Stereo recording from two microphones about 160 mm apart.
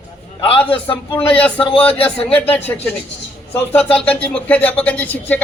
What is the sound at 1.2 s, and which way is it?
Speech, 35° left (ahead or behind).